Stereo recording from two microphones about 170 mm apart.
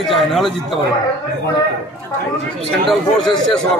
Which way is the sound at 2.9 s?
Centre (ahead or behind).